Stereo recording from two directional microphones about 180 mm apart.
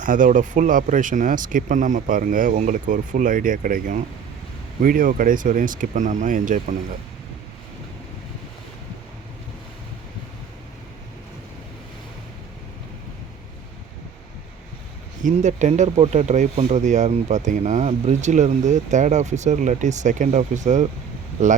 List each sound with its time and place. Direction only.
0.0 s speech: 45° right (ahead or behind)
15.2 s speech: 40° right (ahead or behind)